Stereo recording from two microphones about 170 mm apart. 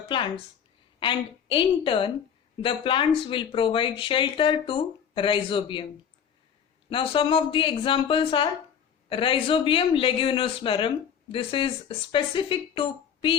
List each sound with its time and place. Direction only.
0.1 s a woman's voice: 30° left (ahead or behind)
6.9 s speech: 30° left (ahead or behind)